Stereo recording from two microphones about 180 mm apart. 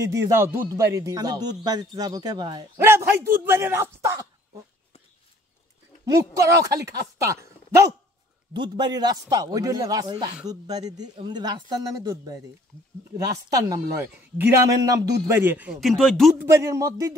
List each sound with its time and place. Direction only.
0.1 s speech: 15° right (ahead or behind)
2.8 s a man's voice: 15° right (ahead or behind)
6.0 s a man's voice: 15° right (ahead or behind)
13.5 s a man's voice: 20° right (ahead or behind); by 16.3 s centre (ahead or behind)
16.3 s a man's voice: 15° right (ahead or behind)